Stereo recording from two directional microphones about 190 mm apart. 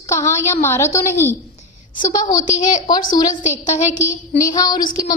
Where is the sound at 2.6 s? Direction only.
40° left (ahead or behind).